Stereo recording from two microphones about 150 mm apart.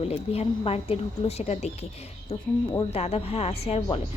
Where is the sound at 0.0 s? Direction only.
45° left (ahead or behind).